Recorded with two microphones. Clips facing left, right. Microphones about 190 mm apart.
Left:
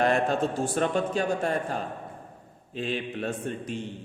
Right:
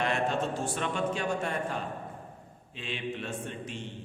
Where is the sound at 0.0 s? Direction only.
40° left (ahead or behind).